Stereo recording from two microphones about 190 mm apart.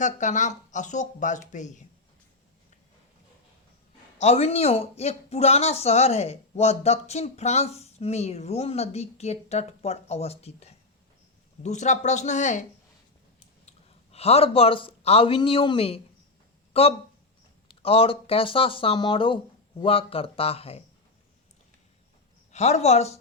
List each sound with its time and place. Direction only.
0.0 s speech: 40° left (ahead or behind)
4.2 s speech: 35° left (ahead or behind)
13.7 s a man's voice: 30° left (ahead or behind)
22.5 s speech: 35° left (ahead or behind)